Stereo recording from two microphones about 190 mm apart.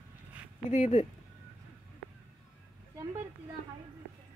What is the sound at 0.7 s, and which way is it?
Speech, 40° left (ahead or behind).